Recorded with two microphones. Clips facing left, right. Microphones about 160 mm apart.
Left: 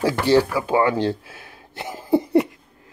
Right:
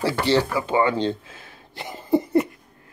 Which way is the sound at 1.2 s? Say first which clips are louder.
Left 2 dB; 10° left (ahead or behind).